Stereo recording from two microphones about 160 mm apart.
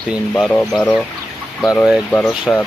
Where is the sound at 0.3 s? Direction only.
5° left (ahead or behind).